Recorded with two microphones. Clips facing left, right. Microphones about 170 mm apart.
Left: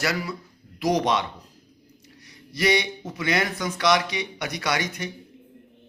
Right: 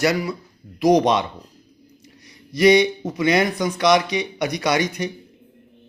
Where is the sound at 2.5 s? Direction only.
20° right (ahead or behind).